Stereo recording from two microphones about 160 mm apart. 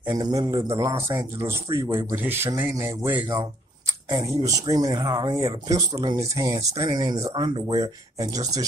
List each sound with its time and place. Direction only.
0.0 s speech: 20° right (ahead or behind)
4.1 s speech: 20° right (ahead or behind)